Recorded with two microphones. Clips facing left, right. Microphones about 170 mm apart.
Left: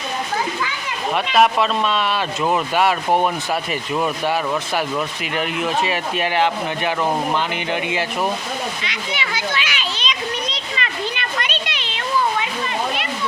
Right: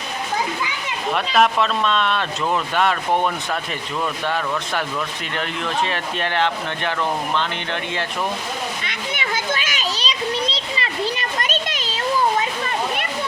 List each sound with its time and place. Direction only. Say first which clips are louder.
1.1 s speech: left 2 dB; 5° left (ahead or behind)
8.8 s children playing: left 1 dB; 50° right (ahead or behind)
12.4 s a sound: even; 45° right (ahead or behind)